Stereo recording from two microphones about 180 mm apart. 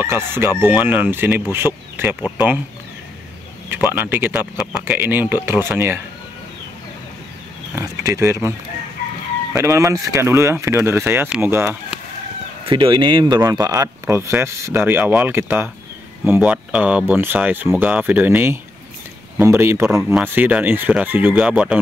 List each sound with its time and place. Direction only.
0.0 s speech: 15° right (ahead or behind)
3.6 s speech: 10° right (ahead or behind)
7.7 s speech: 15° right (ahead or behind)
12.6 s speech: 30° right (ahead or behind); by 21.7 s 5° right (ahead or behind)